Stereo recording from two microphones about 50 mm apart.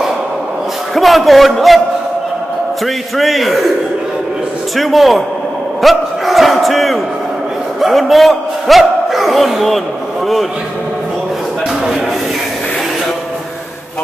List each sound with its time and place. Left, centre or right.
0.9 s a man's voice: centre
3.2 s a man's voice: centre
4.7 s a man's voice: centre